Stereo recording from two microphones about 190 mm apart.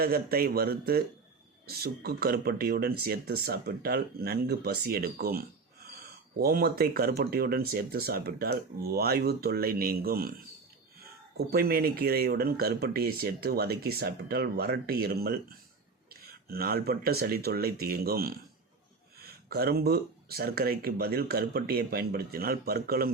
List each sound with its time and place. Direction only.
0.0 s speech: 50° right (ahead or behind)
11.3 s speech: 55° right (ahead or behind)